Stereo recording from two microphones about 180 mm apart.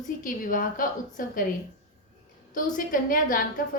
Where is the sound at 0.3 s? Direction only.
50° left (ahead or behind).